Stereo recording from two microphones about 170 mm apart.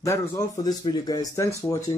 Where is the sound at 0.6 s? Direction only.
25° left (ahead or behind).